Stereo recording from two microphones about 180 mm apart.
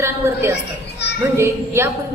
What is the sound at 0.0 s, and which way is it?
Speech, 15° right (ahead or behind).